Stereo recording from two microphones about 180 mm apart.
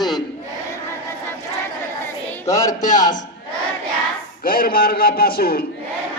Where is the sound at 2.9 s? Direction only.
20° left (ahead or behind).